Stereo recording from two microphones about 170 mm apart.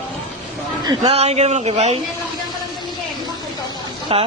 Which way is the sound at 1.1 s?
35° right (ahead or behind).